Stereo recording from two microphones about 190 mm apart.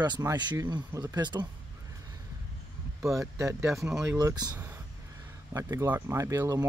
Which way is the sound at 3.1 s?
15° right (ahead or behind).